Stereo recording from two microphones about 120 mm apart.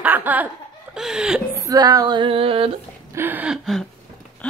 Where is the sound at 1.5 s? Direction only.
25° right (ahead or behind); by 2.7 s 50° right (ahead or behind).